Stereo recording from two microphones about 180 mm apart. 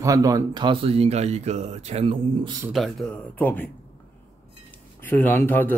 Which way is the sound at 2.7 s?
Centre (ahead or behind).